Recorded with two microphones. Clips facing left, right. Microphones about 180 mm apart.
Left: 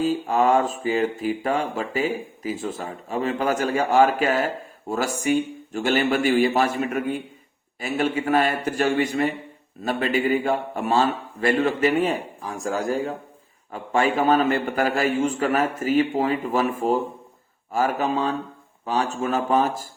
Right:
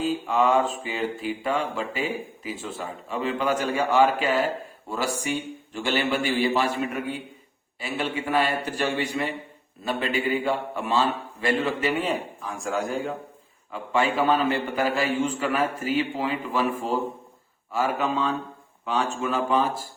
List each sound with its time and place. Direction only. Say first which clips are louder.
0.0 s mantra: left 3 dB; 40° left (ahead or behind)
12.4 s speech: left 2 dB; 35° left (ahead or behind)
13.7 s mantra: left 2 dB; 45° left (ahead or behind)